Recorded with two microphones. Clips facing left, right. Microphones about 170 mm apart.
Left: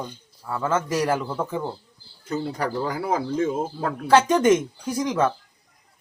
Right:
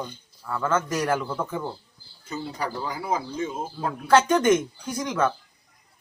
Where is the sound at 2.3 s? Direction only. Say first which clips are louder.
Left 5 dB; 65° left (ahead or behind).